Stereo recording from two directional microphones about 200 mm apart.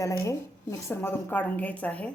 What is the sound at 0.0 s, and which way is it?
A woman's voice, 15° left (ahead or behind).